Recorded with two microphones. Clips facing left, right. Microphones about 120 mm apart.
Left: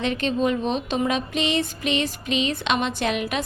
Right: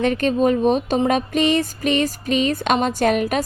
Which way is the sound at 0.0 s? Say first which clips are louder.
Right 5 dB; 45° right (ahead or behind).